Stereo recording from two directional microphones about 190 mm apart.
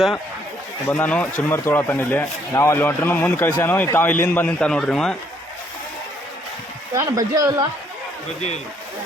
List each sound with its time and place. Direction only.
0.9 s speech: 10° left (ahead or behind)
6.9 s speech: 20° right (ahead or behind)